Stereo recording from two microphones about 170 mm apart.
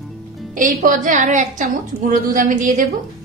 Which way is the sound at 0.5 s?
50° right (ahead or behind).